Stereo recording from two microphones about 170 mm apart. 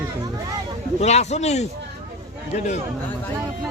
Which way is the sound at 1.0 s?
40° left (ahead or behind).